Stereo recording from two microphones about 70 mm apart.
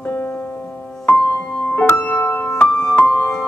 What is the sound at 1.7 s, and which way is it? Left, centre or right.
Music, left.